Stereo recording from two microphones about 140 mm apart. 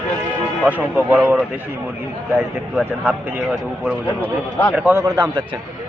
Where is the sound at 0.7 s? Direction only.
10° right (ahead or behind).